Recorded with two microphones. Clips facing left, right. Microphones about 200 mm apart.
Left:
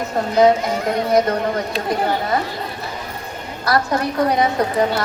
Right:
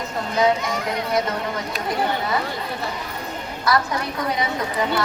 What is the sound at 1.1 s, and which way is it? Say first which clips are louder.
Speech: left 7 dB; 50° left (ahead or behind).